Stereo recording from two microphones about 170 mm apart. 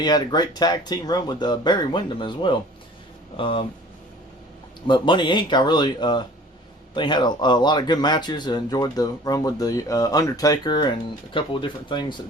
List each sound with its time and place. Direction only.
0.0 s speech: 25° left (ahead or behind)
4.9 s speech: 25° left (ahead or behind)